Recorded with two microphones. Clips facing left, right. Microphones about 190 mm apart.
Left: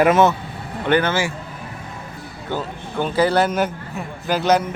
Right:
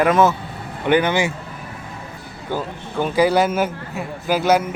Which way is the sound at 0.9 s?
15° right (ahead or behind).